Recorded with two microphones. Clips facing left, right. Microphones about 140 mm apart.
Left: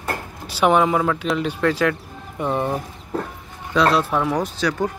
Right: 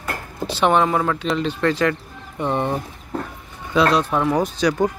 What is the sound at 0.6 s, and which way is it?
Speech, 10° left (ahead or behind).